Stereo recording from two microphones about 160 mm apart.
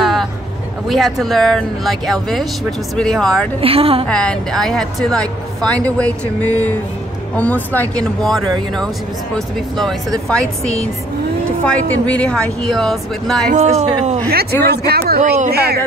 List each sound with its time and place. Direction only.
0.0 s a sound: centre (ahead or behind)
0.8 s a woman's voice: centre (ahead or behind)
3.6 s a woman's voice: 35° right (ahead or behind)
4.1 s a woman's voice: 5° left (ahead or behind)
10.2 s a woman's voice: 5° left (ahead or behind)
11.6 s a woman's voice: 5° left (ahead or behind)
13.5 s speech: 45° right (ahead or behind)
14.6 s speech: 85° right
15.1 s speech: 45° right (ahead or behind)
15.5 s a woman's voice: 80° right